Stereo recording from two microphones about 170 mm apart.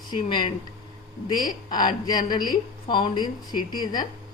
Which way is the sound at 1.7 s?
25° left (ahead or behind).